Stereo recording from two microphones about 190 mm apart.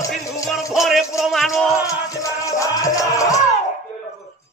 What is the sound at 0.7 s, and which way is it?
Music, centre (ahead or behind).